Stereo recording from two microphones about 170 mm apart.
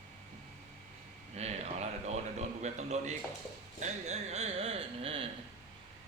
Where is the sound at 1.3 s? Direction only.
40° right (ahead or behind).